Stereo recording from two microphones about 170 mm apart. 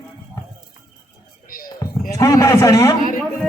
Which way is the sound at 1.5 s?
60° left (ahead or behind).